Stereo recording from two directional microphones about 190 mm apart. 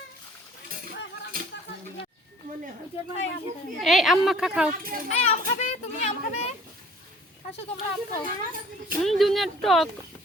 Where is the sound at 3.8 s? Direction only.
Centre (ahead or behind).